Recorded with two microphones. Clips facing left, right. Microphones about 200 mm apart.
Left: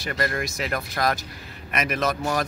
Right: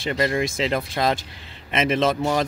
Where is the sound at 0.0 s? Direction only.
20° right (ahead or behind).